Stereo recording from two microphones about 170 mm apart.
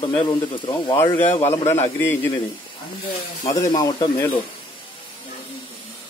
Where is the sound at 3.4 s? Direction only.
20° left (ahead or behind).